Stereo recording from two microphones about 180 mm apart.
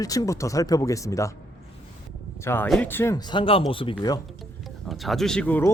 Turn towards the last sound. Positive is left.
turn(degrees=10)  # may be behind; listen again after turning